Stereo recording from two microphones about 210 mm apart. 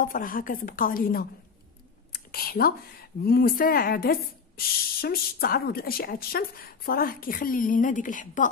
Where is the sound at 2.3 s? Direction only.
45° left (ahead or behind).